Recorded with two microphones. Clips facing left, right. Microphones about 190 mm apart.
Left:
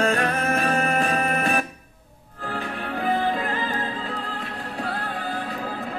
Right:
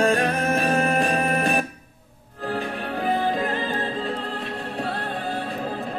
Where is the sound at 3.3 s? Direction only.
30° right (ahead or behind).